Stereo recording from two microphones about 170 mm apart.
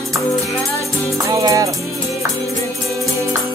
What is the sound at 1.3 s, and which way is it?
Music, 20° right (ahead or behind).